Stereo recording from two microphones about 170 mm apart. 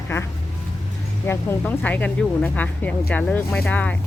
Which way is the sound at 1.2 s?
10° left (ahead or behind).